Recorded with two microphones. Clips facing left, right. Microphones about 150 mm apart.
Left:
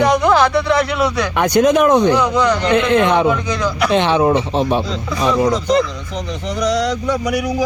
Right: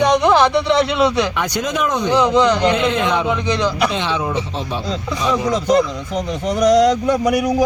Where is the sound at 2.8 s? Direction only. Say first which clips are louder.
Left 5 dB; 60° left (ahead or behind).